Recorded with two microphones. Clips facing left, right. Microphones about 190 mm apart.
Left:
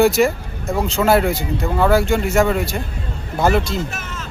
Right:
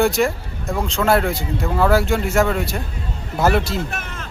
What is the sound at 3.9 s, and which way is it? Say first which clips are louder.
Vehicle: even; 55° right (ahead or behind).